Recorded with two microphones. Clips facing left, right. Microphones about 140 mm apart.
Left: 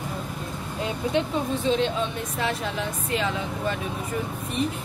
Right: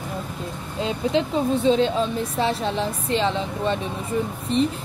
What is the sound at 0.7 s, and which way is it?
A woman's voice, 25° right (ahead or behind).